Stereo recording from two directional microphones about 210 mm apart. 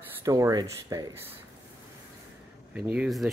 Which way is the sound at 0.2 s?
15° right (ahead or behind).